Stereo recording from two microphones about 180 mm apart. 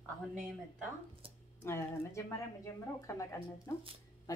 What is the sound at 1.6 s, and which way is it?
Speech, 15° left (ahead or behind).